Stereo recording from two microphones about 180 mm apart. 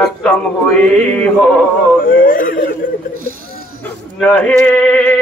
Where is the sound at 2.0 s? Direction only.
50° left (ahead or behind).